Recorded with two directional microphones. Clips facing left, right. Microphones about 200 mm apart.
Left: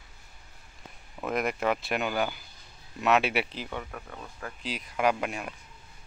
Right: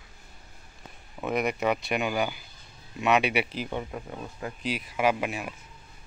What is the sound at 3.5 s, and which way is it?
Speech, 15° right (ahead or behind).